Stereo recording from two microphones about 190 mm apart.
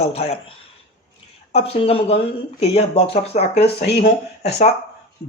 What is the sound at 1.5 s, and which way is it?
Speech, 30° left (ahead or behind).